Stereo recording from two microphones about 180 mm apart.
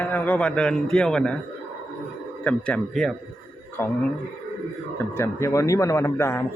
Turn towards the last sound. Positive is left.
turn(degrees=15)  # may be behind; listen again after turning